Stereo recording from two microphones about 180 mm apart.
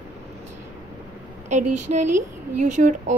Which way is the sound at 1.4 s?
40° right (ahead or behind).